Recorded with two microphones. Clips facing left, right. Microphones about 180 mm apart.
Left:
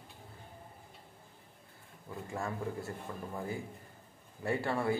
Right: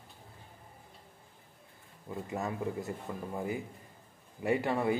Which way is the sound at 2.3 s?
20° right (ahead or behind).